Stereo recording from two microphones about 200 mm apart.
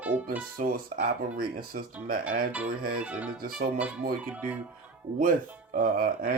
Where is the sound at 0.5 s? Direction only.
45° right (ahead or behind).